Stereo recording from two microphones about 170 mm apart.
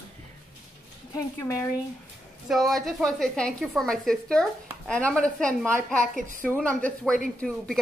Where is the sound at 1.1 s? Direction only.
20° left (ahead or behind).